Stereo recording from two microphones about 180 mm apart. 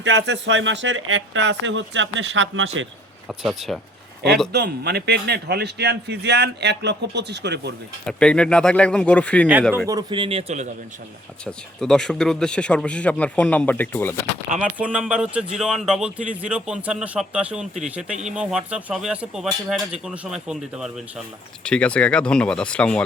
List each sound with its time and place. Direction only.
0.0 s speech: 85° right
3.2 s speech: centre (ahead or behind)
4.5 s a man's voice: 65° right (ahead or behind)
8.0 s speech: 5° left (ahead or behind)
9.7 s a man's voice: 20° right (ahead or behind); by 10.7 s 35° right (ahead or behind)
11.4 s speech: 5° left (ahead or behind)
14.6 s speech: 5° right (ahead or behind)